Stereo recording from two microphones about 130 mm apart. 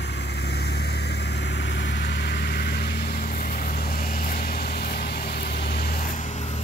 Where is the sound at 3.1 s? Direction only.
90° left.